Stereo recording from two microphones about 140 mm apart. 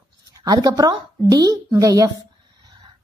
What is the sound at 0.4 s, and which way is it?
A woman's voice, 30° right (ahead or behind).